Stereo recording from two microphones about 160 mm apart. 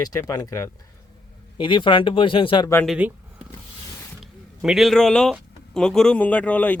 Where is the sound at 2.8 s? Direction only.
5° right (ahead or behind).